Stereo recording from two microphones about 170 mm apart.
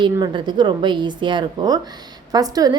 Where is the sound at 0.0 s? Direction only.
25° right (ahead or behind).